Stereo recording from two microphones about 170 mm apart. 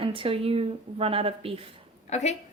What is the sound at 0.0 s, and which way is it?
A woman's voice, 30° right (ahead or behind).